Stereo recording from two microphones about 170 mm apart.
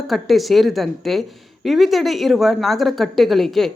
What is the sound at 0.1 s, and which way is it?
Speech, centre (ahead or behind).